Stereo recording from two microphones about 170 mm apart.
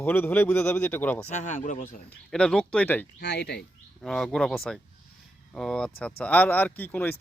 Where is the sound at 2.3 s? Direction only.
5° left (ahead or behind).